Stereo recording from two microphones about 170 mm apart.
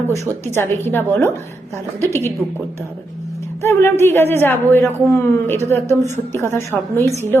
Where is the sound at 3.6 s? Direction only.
15° left (ahead or behind).